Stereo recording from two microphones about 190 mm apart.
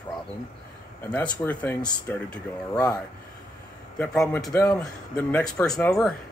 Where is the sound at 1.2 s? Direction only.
20° left (ahead or behind).